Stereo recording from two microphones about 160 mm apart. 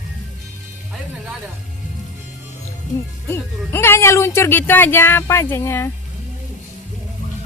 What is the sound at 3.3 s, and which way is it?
Speech, 15° left (ahead or behind).